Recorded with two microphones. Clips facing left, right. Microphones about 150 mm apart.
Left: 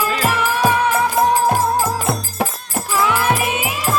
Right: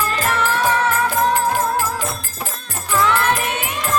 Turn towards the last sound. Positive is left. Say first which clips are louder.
# even
turn(degrees=10)  # may be behind; listen again after turning